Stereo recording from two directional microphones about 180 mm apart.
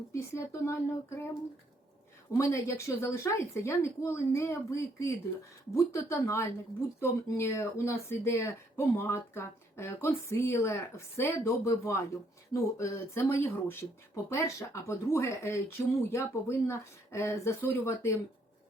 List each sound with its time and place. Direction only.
0.1 s speech: 15° left (ahead or behind)
2.4 s speech: 15° left (ahead or behind)